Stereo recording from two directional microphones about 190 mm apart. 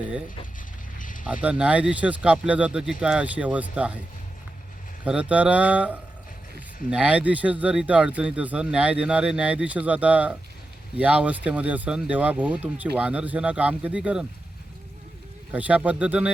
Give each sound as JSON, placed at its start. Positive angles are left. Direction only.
{"t": 0.9, "sound": "a sound", "side_deg": 45}
{"t": 1.2, "sound": "speech", "side_deg": -5}
{"t": 5.0, "sound": "speech", "side_deg": -5}
{"t": 15.5, "sound": "speech", "side_deg": -10}